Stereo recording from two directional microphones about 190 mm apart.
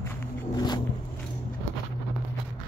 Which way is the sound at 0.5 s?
20° left (ahead or behind).